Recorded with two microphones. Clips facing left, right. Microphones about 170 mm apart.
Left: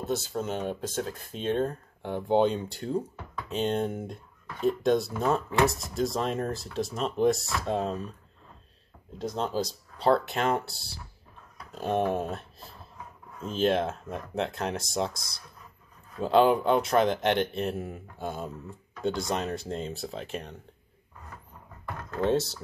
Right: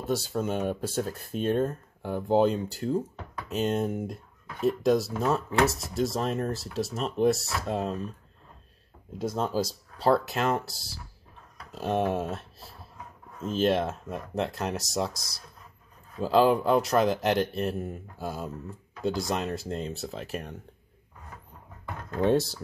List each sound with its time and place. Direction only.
0.4 s speech: 10° right (ahead or behind)
9.2 s speech: 5° right (ahead or behind)